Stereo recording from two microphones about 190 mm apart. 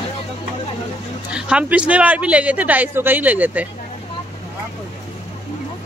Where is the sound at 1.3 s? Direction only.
5° right (ahead or behind).